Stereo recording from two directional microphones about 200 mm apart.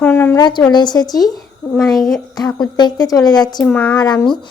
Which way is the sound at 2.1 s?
20° left (ahead or behind).